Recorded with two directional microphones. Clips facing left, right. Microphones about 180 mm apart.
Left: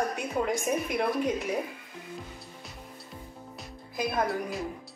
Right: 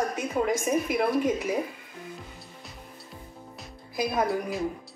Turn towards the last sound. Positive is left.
turn(degrees=0)  # may be behind; listen again after turning